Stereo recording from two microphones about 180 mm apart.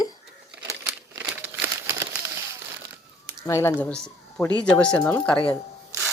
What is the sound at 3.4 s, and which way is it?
Speech, 15° left (ahead or behind).